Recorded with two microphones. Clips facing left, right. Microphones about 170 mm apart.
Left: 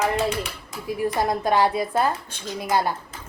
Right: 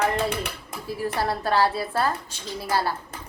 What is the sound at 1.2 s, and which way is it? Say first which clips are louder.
Dishes: left 2 dB; 15° left (ahead or behind).